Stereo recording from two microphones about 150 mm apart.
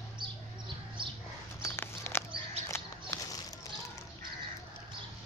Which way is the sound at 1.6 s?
15° left (ahead or behind).